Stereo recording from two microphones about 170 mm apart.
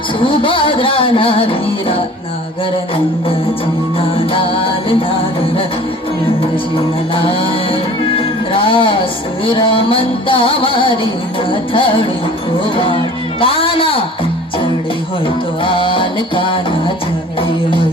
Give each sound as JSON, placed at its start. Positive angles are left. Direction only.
{"t": 0.2, "sound": "music", "side_deg": 30}
{"t": 4.3, "sound": "music", "side_deg": 30}
{"t": 6.7, "sound": "music", "side_deg": 30}
{"t": 15.6, "sound": "music", "side_deg": 30}